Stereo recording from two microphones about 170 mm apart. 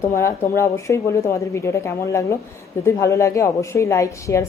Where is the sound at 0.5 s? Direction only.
15° left (ahead or behind).